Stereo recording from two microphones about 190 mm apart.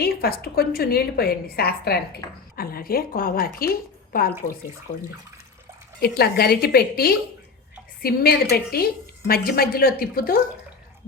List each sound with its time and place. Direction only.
0.0 s a woman's voice: 50° left (ahead or behind)
6.0 s a woman's voice: 55° left (ahead or behind)